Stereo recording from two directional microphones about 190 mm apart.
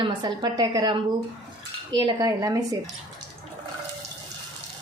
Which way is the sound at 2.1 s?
20° right (ahead or behind).